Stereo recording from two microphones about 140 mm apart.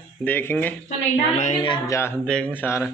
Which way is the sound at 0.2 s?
15° left (ahead or behind).